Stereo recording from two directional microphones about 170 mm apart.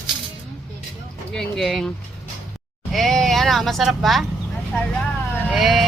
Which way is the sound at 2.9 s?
Centre (ahead or behind).